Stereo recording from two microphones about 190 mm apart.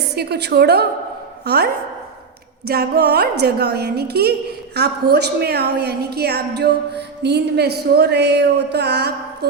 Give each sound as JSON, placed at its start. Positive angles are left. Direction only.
{"t": 0.1, "sound": "a woman's voice", "side_deg": -60}
{"t": 2.6, "sound": "a woman's voice", "side_deg": -55}